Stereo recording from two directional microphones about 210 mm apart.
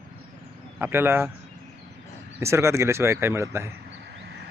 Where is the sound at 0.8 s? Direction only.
10° right (ahead or behind).